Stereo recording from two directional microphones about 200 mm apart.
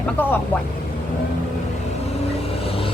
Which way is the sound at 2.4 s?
30° left (ahead or behind).